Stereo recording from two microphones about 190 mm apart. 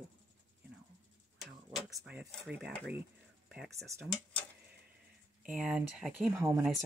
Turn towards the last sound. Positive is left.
turn(degrees=-15)  # may be behind; listen again after turning